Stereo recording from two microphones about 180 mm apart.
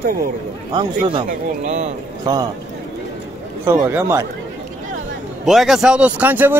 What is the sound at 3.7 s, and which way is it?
Speech, 10° right (ahead or behind).